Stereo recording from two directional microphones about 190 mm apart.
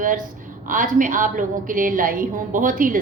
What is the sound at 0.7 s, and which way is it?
A woman's voice, 45° right (ahead or behind).